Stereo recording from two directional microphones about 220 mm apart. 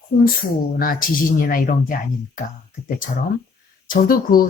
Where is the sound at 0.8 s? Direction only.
40° left (ahead or behind).